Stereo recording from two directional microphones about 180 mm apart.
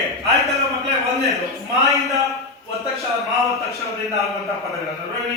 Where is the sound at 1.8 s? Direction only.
20° right (ahead or behind).